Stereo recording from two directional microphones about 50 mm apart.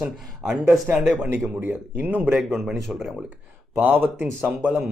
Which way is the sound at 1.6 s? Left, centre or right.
Right.